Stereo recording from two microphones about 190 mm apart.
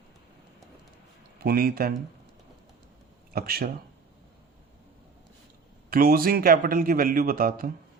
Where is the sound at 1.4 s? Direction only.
55° right (ahead or behind).